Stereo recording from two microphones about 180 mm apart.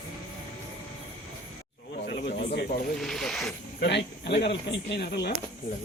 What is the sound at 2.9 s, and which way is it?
Speech, centre (ahead or behind).